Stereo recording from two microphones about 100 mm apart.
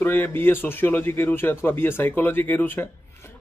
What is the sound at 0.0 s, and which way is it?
Speech, 20° left (ahead or behind).